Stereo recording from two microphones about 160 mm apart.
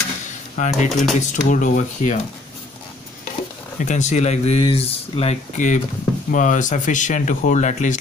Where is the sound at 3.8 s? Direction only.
50° left (ahead or behind).